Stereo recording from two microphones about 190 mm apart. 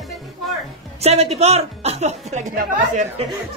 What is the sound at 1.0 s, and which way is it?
A man's voice, 35° right (ahead or behind).